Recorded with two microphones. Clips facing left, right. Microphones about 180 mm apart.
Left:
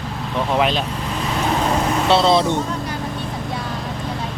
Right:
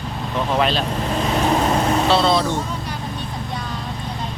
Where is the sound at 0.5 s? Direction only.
10° left (ahead or behind).